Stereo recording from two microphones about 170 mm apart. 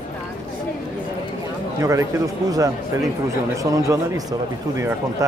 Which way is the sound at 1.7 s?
15° right (ahead or behind).